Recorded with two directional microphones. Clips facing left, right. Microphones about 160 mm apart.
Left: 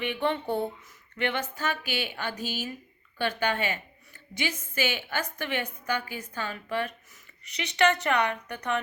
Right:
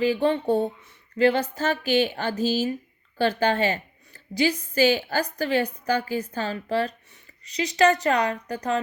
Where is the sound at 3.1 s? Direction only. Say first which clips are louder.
Right 6 dB; 40° right (ahead or behind).